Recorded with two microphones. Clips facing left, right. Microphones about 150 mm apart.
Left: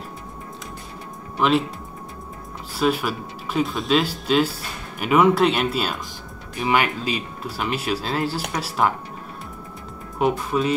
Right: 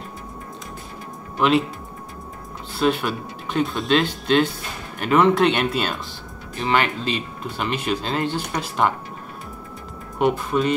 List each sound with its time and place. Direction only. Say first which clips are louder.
1.4 s speech: right 1 dB; centre (ahead or behind)
2.8 s speech: right 1 dB; 5° left (ahead or behind)
10.1 s speech: right 1 dB; centre (ahead or behind)